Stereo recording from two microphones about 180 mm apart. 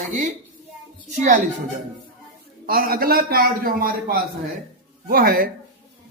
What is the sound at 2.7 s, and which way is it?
A man's voice, 55° right (ahead or behind).